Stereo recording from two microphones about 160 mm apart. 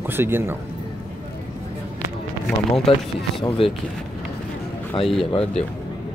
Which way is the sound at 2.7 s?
Centre (ahead or behind).